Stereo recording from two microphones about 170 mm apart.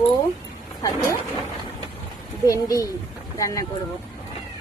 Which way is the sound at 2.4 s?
20° left (ahead or behind).